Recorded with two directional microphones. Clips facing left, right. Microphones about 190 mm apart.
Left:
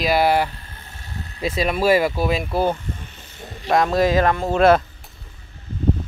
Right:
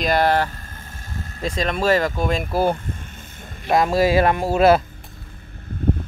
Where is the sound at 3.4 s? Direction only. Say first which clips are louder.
Left 3 dB; 50° right (ahead or behind).